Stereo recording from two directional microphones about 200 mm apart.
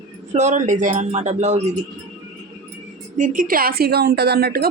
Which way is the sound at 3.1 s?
40° right (ahead or behind).